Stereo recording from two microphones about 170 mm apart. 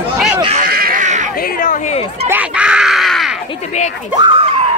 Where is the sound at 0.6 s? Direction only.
60° right (ahead or behind).